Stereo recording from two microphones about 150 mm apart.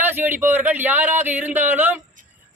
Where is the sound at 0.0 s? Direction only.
15° right (ahead or behind).